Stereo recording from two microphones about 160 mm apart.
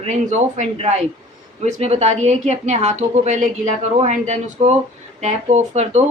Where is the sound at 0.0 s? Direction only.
45° right (ahead or behind).